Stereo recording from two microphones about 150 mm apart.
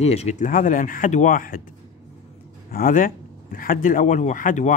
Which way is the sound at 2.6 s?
70° left (ahead or behind).